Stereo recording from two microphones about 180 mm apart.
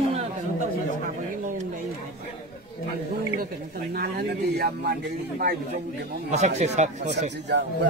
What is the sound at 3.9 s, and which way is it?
Speech, 55° right (ahead or behind).